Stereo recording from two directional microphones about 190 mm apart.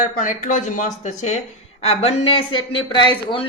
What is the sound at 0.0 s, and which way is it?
Speech, 45° left (ahead or behind).